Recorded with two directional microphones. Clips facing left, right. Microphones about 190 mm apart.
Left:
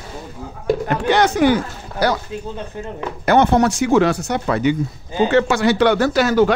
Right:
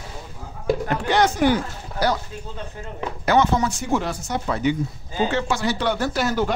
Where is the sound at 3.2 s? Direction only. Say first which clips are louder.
Left 5 dB; 60° left (ahead or behind); by 6.5 s 85° left.